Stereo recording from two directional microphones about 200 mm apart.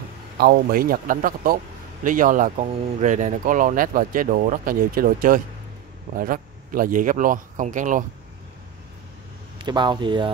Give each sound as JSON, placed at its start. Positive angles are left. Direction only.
{"t": 0.4, "sound": "speech", "side_deg": -45}
{"t": 9.6, "sound": "speech", "side_deg": -20}